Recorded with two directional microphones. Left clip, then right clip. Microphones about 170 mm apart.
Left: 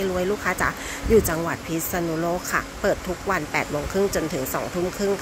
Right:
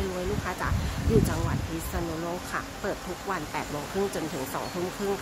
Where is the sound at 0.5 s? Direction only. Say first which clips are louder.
Left 8 dB; 30° left (ahead or behind).